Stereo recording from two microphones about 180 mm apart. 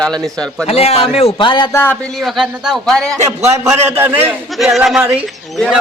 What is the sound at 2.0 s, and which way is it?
A man's voice, centre (ahead or behind).